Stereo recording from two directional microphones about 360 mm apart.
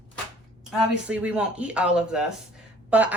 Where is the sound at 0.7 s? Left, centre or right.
Centre.